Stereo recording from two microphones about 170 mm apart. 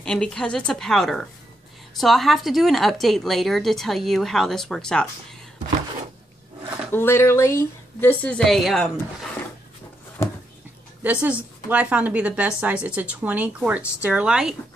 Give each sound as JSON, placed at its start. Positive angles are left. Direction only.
{"t": 0.0, "sound": "a woman's voice", "side_deg": 5}
{"t": 6.9, "sound": "speech", "side_deg": 15}
{"t": 11.0, "sound": "a woman's voice", "side_deg": -10}